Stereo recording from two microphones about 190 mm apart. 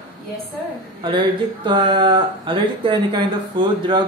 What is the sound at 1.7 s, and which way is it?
Speech, 25° right (ahead or behind).